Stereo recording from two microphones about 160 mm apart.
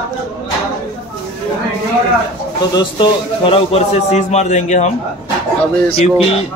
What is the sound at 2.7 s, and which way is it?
A man's voice, 30° left (ahead or behind).